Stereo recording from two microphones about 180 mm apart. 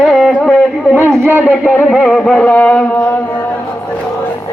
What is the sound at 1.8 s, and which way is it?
Music, 5° left (ahead or behind).